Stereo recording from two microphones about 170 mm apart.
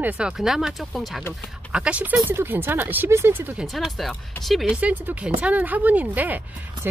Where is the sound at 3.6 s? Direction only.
Centre (ahead or behind).